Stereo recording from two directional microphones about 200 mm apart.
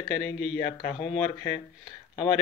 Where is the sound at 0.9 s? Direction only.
30° left (ahead or behind).